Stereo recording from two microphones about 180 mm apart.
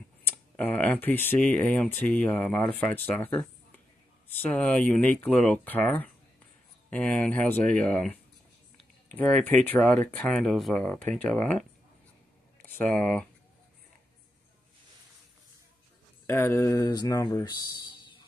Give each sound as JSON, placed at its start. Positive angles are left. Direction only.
{"t": 0.6, "sound": "speech", "side_deg": 10}
{"t": 8.7, "sound": "a sound", "side_deg": 5}
{"t": 9.7, "sound": "speech", "side_deg": 5}
{"t": 12.6, "sound": "speech", "side_deg": 10}
{"t": 16.3, "sound": "speech", "side_deg": 15}